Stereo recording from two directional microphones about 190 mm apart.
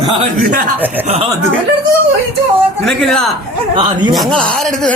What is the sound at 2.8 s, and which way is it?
Speech, centre (ahead or behind).